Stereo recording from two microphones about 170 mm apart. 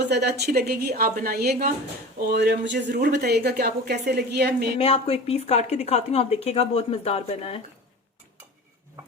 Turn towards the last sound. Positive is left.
turn(degrees=35)  # may be behind; listen again after turning